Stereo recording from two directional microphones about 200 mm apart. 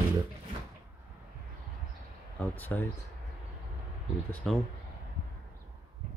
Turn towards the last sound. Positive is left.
turn(degrees=5)  # may be behind; listen again after turning